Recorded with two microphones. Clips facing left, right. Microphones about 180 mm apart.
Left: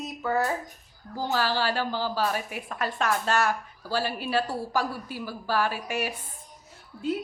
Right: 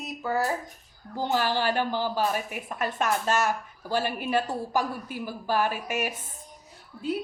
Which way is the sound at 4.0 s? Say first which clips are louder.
Even; 55° right (ahead or behind).